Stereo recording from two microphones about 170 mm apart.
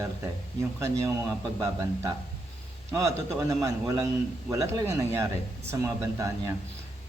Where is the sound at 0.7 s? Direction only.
20° right (ahead or behind).